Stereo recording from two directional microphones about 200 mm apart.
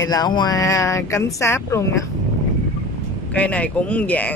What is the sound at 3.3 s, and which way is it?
Speech, 5° left (ahead or behind).